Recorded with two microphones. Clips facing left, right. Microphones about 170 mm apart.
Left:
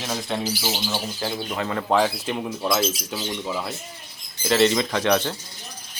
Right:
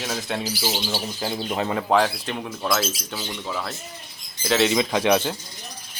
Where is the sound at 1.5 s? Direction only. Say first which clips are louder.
Right 2 dB; 20° right (ahead or behind).